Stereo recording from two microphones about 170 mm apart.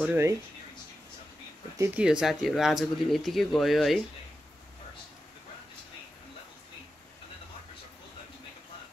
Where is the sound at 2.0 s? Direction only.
5° right (ahead or behind).